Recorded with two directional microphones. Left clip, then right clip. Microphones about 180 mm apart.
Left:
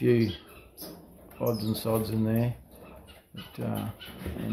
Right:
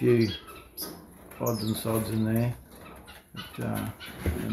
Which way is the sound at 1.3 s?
10° left (ahead or behind).